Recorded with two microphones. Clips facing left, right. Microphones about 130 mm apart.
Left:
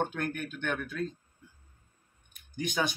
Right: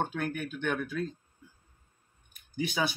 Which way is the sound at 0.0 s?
5° right (ahead or behind).